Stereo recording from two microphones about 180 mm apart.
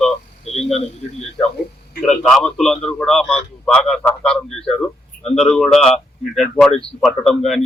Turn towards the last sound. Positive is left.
turn(degrees=0)  # may be behind; listen again after turning